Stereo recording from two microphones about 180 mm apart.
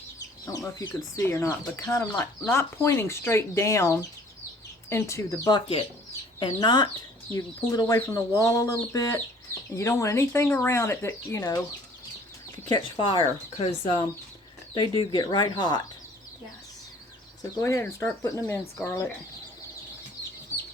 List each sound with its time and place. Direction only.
0.4 s speech: 20° left (ahead or behind)
12.7 s speech: 30° left (ahead or behind)
17.4 s speech: 15° left (ahead or behind)